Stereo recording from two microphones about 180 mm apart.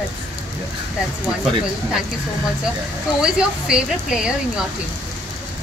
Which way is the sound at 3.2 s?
5° right (ahead or behind).